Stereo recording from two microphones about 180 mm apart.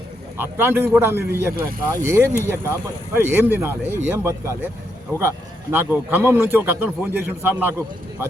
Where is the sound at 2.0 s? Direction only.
15° right (ahead or behind).